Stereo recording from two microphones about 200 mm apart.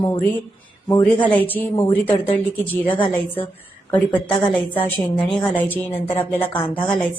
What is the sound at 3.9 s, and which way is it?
A woman's voice, 5° left (ahead or behind).